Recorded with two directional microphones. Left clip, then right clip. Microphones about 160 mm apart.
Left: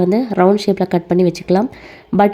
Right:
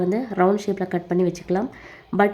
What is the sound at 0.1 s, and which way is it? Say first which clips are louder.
Speech: left 7 dB; 30° left (ahead or behind).